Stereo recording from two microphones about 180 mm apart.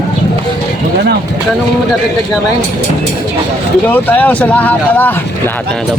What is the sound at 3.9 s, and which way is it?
Speech, 10° left (ahead or behind).